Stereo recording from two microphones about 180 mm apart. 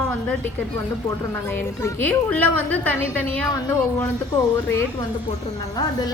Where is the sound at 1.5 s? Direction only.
10° left (ahead or behind).